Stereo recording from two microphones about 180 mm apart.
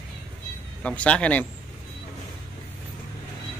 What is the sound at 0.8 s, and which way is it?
Speech, 5° left (ahead or behind).